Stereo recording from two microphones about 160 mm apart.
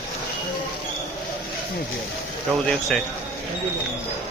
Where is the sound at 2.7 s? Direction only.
5° left (ahead or behind).